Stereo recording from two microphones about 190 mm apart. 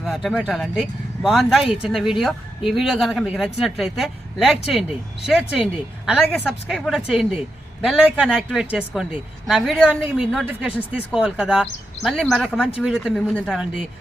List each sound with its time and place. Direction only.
0.0 s speech: centre (ahead or behind)